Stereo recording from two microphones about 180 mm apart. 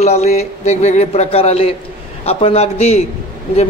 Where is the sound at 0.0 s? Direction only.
40° left (ahead or behind).